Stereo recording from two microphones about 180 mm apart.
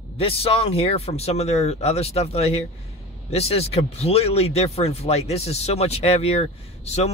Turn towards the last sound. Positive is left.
turn(degrees=35)  # may be behind; listen again after turning